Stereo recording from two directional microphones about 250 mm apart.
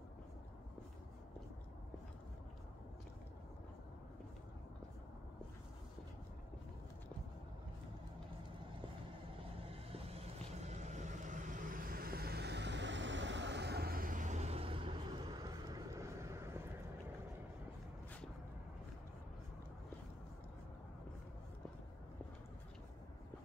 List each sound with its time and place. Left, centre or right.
9.7 s vehicle: right